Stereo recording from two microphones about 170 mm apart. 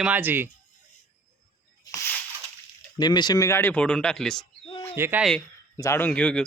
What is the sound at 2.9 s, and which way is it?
Speech, 25° left (ahead or behind).